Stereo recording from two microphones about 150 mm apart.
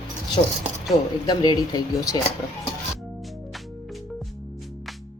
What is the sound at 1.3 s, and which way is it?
Speech, 30° left (ahead or behind).